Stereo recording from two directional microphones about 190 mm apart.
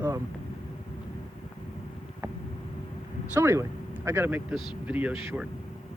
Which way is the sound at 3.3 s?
15° right (ahead or behind).